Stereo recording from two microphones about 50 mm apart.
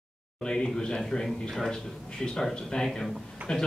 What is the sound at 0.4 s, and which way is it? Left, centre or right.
Speech, centre.